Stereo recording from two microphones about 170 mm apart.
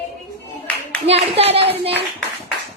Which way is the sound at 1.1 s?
35° right (ahead or behind).